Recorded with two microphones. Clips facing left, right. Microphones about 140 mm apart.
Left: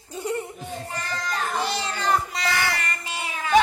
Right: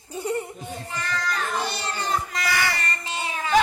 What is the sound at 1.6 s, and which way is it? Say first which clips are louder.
Speech: left 2 dB; 90° left.